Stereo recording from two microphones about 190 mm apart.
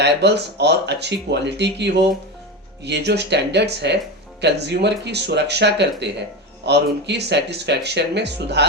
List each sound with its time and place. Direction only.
0.0 s speech: 65° right (ahead or behind)